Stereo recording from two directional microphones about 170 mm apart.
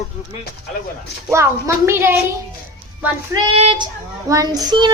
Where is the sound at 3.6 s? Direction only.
35° right (ahead or behind).